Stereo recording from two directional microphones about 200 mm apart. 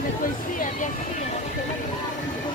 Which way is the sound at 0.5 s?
40° left (ahead or behind).